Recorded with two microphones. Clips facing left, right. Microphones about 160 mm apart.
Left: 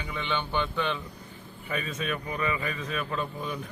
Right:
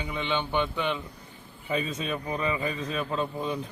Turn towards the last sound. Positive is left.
turn(degrees=-25)  # may be behind; listen again after turning